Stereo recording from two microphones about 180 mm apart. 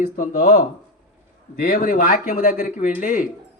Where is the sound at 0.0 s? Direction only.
50° left (ahead or behind).